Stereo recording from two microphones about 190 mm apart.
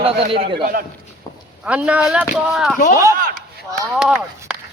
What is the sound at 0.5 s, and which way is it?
Speech, 50° right (ahead or behind).